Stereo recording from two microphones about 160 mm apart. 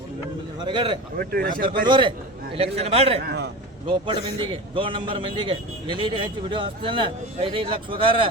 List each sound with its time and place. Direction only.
0.6 s a man's voice: 30° right (ahead or behind)
1.2 s a man's voice: 65° right (ahead or behind)
1.9 s a man's voice: 30° right (ahead or behind)